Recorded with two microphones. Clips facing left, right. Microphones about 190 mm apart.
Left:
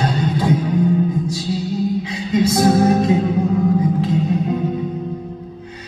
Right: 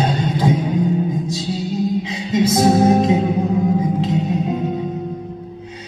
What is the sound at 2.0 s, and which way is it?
Music, 20° right (ahead or behind).